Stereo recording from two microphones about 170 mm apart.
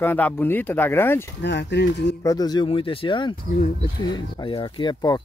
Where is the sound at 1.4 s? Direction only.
85° left.